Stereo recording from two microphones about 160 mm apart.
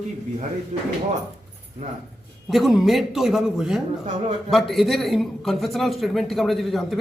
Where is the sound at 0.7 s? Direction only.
45° right (ahead or behind).